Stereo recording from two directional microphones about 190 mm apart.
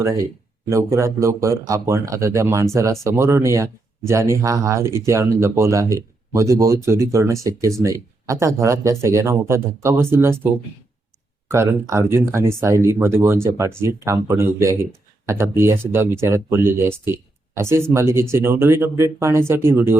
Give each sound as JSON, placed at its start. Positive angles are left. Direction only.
{"t": 0.0, "sound": "speech", "side_deg": -15}
{"t": 11.4, "sound": "speech", "side_deg": -15}